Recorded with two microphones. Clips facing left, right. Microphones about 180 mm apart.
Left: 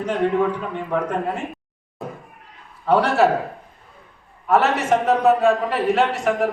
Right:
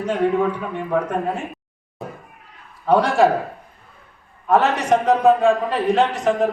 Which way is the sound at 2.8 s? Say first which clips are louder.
Right 1 dB; 15° right (ahead or behind).